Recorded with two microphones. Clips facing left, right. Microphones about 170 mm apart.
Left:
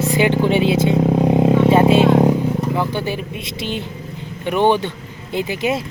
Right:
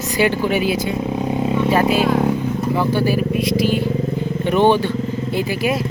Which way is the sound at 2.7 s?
20° left (ahead or behind).